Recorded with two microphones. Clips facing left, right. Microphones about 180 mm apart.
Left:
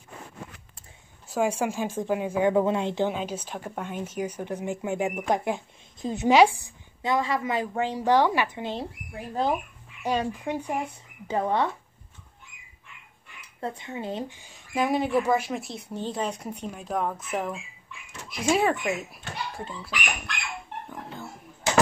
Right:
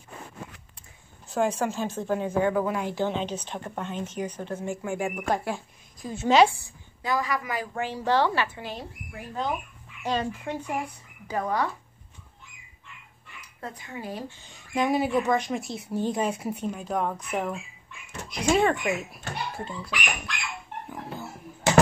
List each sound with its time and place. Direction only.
1.3 s speech: 10° left (ahead or behind)
2.5 s a woman's voice: 25° left (ahead or behind)
3.1 s a woman's voice: 5° left (ahead or behind)
9.3 s speech: 35° left (ahead or behind)
10.0 s speech: 15° left (ahead or behind)
11.2 s a woman's voice: 25° left (ahead or behind)
13.6 s a woman's voice: 25° left (ahead or behind)
14.4 s speech: 5° left (ahead or behind)
20.9 s a sound: 5° right (ahead or behind)